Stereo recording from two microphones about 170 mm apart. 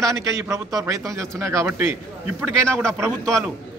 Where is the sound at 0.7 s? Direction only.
20° right (ahead or behind).